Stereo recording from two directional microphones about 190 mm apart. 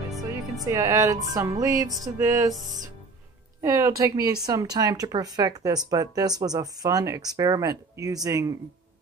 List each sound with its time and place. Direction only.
0.2 s music: 15° right (ahead or behind)
1.3 s speech: 15° right (ahead or behind)
3.6 s speech: 15° right (ahead or behind)